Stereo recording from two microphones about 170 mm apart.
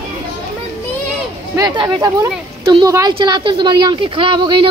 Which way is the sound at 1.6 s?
20° right (ahead or behind).